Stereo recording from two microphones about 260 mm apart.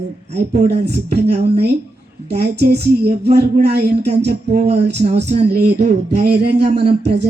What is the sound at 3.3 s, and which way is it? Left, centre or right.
Speech, right.